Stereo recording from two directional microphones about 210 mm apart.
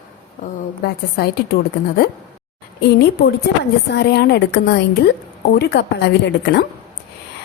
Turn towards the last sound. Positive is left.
turn(degrees=55)  # may be behind; listen again after turning